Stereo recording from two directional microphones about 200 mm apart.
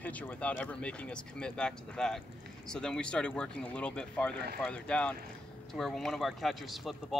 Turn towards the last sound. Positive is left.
turn(degrees=0)  # may be behind; listen again after turning